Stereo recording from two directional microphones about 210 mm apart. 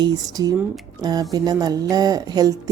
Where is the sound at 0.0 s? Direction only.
15° right (ahead or behind).